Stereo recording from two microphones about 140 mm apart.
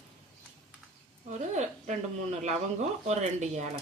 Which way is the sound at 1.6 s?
55° right (ahead or behind).